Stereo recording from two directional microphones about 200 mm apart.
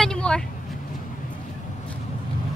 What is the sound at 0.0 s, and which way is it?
Vehicle, 5° left (ahead or behind).